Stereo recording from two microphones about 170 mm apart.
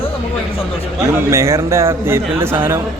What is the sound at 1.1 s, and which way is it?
Speech, 15° right (ahead or behind).